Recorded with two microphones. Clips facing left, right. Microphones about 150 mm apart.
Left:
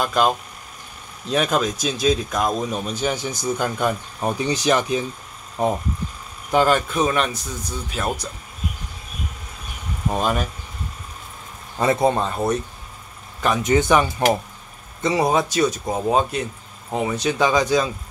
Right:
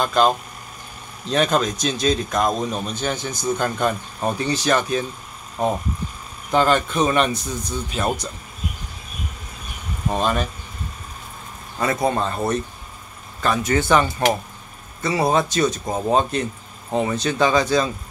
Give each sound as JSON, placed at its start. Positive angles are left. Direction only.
{"t": 0.0, "sound": "a man's voice", "side_deg": 5}
{"t": 1.3, "sound": "a man's voice", "side_deg": 5}
{"t": 10.1, "sound": "a man's voice", "side_deg": 10}
{"t": 11.8, "sound": "a man's voice", "side_deg": 25}